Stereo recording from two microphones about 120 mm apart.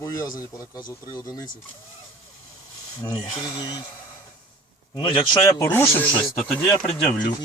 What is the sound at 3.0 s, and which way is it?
Speech, 30° left (ahead or behind).